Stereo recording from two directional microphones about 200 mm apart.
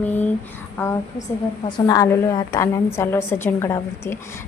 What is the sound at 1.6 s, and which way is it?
A woman's voice, 20° left (ahead or behind).